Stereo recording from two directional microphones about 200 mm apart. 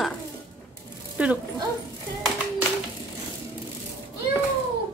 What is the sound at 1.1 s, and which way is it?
Speech, 5° right (ahead or behind).